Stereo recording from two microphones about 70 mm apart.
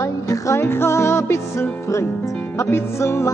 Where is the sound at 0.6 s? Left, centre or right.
Left.